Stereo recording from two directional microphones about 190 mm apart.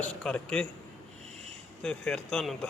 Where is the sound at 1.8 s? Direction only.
5° left (ahead or behind).